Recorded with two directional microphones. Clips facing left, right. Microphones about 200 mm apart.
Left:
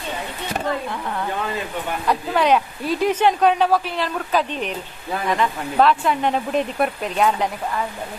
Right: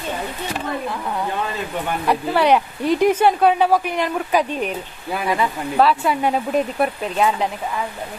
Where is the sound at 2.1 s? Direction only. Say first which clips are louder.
Right 2 dB; 10° right (ahead or behind).